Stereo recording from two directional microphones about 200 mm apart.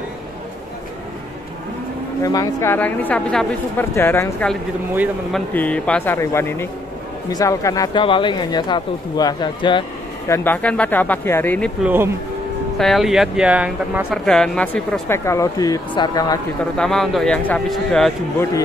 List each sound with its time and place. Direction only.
2.2 s speech: 15° left (ahead or behind)
4.9 s speech: 5° right (ahead or behind)
5.5 s speech: 10° left (ahead or behind)
11.8 s speech: 10° right (ahead or behind)
12.7 s speech: centre (ahead or behind)
14.2 s speech: 5° left (ahead or behind); by 16.3 s 20° left (ahead or behind)
16.7 s speech: centre (ahead or behind)